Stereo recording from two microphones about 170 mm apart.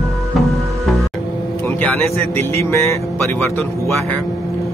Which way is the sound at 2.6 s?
15° left (ahead or behind).